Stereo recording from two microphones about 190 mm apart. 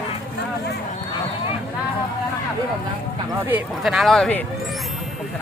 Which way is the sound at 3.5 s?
Centre (ahead or behind).